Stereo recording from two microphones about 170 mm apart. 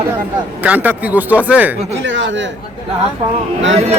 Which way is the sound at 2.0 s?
90° right.